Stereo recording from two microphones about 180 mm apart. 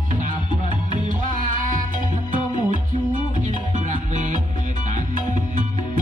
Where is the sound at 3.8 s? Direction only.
45° right (ahead or behind).